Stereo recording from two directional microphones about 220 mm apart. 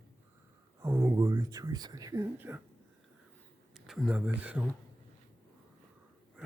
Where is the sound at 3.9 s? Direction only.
Centre (ahead or behind).